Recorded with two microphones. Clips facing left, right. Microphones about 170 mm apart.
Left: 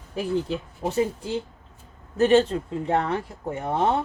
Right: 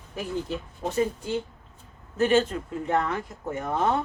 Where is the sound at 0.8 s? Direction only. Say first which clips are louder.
Left 3 dB; 30° left (ahead or behind).